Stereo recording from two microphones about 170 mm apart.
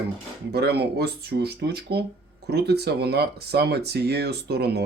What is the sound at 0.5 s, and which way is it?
Speech, 75° right (ahead or behind).